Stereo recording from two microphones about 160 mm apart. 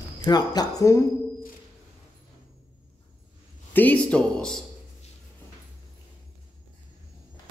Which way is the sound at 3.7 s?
10° left (ahead or behind).